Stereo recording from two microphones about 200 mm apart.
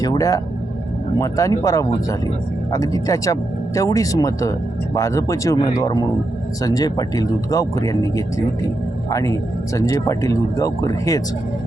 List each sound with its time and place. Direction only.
0.0 s a man's voice: 15° left (ahead or behind)